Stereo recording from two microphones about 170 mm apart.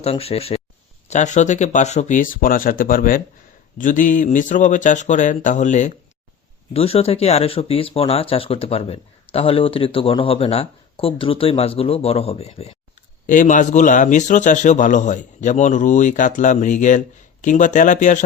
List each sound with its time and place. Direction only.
0.0 s a man's voice: 35° left (ahead or behind)
6.7 s speech: 35° left (ahead or behind)
13.2 s a man's voice: 50° left (ahead or behind)